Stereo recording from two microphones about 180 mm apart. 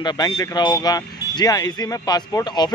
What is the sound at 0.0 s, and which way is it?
Speech, 25° left (ahead or behind).